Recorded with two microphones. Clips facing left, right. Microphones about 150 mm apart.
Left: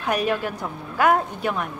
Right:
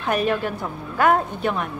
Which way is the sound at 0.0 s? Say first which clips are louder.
Right 1 dB; 5° left (ahead or behind).